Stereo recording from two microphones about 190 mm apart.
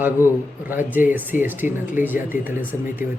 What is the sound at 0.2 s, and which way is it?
Speech, 10° right (ahead or behind).